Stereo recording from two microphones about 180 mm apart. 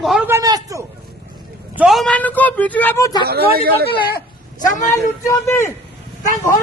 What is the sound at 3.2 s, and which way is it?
Speech, 60° right (ahead or behind).